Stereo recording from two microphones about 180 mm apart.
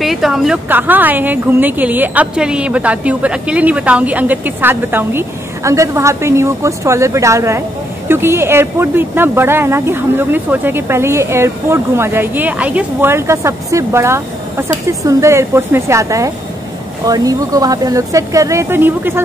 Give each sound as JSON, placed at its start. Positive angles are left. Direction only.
{"t": 0.0, "sound": "a woman's voice", "side_deg": 0}